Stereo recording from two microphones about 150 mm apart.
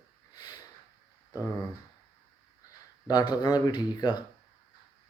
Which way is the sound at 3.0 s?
25° left (ahead or behind).